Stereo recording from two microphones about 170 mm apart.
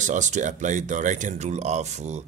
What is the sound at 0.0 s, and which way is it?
Speech, 45° right (ahead or behind).